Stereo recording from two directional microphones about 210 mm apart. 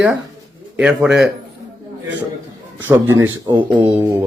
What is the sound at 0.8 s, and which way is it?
Speech, 5° right (ahead or behind).